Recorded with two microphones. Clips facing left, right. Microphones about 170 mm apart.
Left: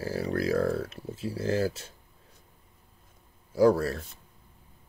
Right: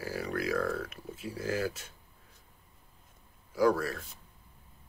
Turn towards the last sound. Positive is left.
turn(degrees=30)  # may be behind; listen again after turning